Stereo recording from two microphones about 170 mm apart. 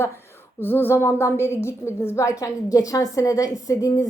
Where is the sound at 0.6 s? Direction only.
10° left (ahead or behind).